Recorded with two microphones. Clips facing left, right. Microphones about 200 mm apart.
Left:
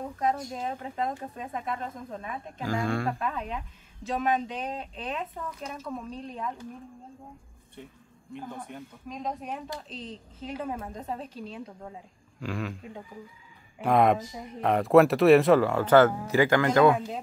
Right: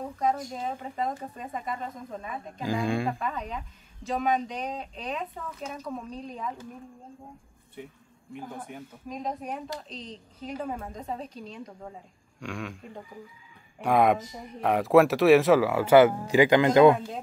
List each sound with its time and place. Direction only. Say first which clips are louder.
0.2 s speech: right 1 dB; centre (ahead or behind)
2.6 s speech: right 1 dB; 15° right (ahead or behind)
3.2 s speech: left 1 dB; centre (ahead or behind)
8.4 s speech: even; 5° right (ahead or behind)